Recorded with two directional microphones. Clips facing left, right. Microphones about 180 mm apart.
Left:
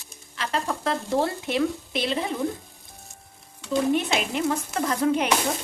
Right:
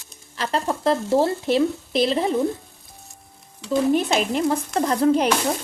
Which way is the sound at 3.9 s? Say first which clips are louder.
Right 4 dB; 40° right (ahead or behind).